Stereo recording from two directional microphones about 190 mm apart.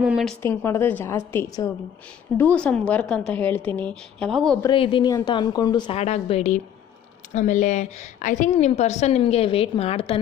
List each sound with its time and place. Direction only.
0.0 s a woman's voice: centre (ahead or behind)
0.4 s a woman's voice: 10° left (ahead or behind)
4.7 s a woman's voice: 25° left (ahead or behind)